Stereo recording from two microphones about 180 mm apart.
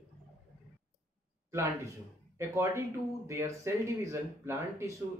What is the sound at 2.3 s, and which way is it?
Speech, 15° right (ahead or behind).